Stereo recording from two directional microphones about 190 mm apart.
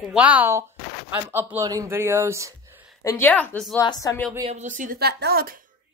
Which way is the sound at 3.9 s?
20° left (ahead or behind).